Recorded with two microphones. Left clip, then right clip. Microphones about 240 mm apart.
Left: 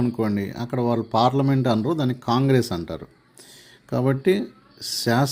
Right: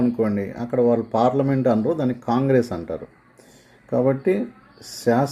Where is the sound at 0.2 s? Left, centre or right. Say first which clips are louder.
Right 3 dB; left.